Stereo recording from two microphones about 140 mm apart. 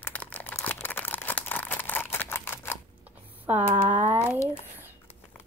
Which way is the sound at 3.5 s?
15° right (ahead or behind).